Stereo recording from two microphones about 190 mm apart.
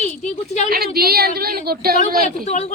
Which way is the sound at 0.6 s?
55° right (ahead or behind).